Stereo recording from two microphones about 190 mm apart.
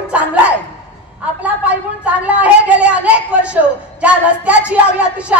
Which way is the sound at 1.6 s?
5° right (ahead or behind).